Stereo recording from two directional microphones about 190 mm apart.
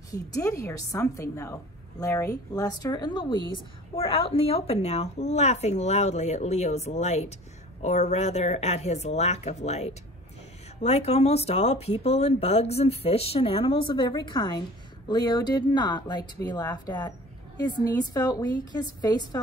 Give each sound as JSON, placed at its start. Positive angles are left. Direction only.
{"t": 0.1, "sound": "a woman's voice", "side_deg": 20}